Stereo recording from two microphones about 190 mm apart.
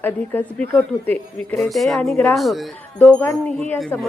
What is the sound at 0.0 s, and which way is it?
Speech, 10° left (ahead or behind).